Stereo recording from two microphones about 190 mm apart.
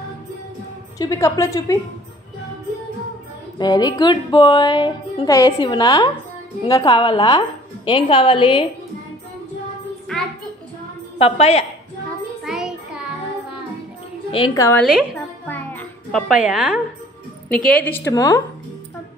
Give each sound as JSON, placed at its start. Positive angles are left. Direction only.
{"t": 0.9, "sound": "a woman's voice", "side_deg": 15}
{"t": 3.5, "sound": "a woman's voice", "side_deg": 20}
{"t": 11.1, "sound": "a woman's voice", "side_deg": 30}
{"t": 12.4, "sound": "music", "side_deg": -5}
{"t": 14.3, "sound": "a woman's voice", "side_deg": 20}
{"t": 14.8, "sound": "a woman's voice", "side_deg": -5}
{"t": 15.1, "sound": "music", "side_deg": 10}
{"t": 16.3, "sound": "a woman's voice", "side_deg": -5}
{"t": 17.6, "sound": "a woman's voice", "side_deg": 10}